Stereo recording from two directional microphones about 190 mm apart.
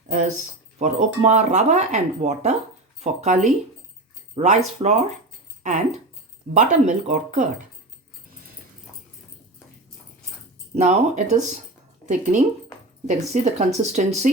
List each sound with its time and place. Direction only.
0.1 s speech: 40° right (ahead or behind)
6.5 s speech: 40° right (ahead or behind)
10.8 s speech: 35° right (ahead or behind)